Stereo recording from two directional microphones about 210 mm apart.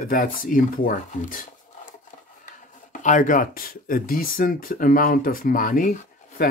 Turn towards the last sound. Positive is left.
turn(degrees=45)  # may be behind; listen again after turning